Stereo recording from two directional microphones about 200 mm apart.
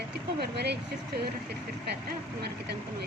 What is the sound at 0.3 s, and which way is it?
Speech, 55° right (ahead or behind).